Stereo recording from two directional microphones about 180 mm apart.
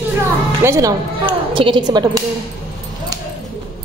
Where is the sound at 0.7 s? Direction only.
15° right (ahead or behind).